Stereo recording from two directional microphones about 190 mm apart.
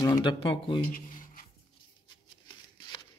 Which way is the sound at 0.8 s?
45° left (ahead or behind).